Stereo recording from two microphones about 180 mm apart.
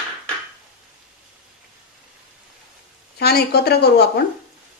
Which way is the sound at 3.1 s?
60° left (ahead or behind).